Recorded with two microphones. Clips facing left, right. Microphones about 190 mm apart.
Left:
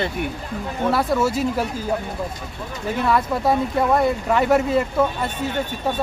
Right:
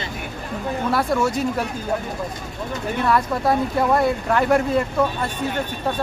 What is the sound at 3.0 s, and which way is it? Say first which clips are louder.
Speech: even; centre (ahead or behind).